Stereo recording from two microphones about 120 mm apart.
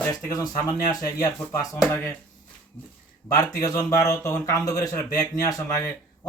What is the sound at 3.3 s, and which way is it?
Speech, 30° left (ahead or behind).